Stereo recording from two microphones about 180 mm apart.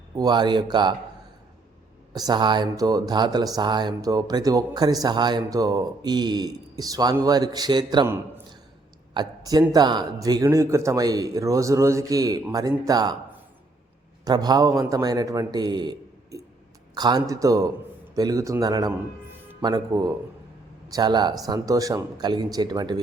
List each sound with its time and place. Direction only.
0.2 s speech: 25° right (ahead or behind)
2.1 s speech: 25° right (ahead or behind)
9.1 s speech: 20° right (ahead or behind)
14.3 s speech: 20° right (ahead or behind)